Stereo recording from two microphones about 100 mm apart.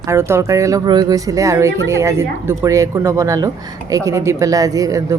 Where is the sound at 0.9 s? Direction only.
40° right (ahead or behind).